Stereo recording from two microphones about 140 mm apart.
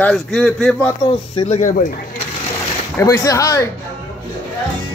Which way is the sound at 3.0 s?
25° left (ahead or behind).